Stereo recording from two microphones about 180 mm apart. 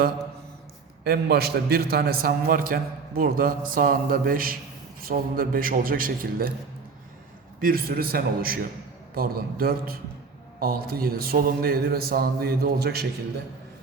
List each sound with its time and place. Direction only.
1.0 s a man's voice: 60° right (ahead or behind)
7.6 s a man's voice: 55° right (ahead or behind)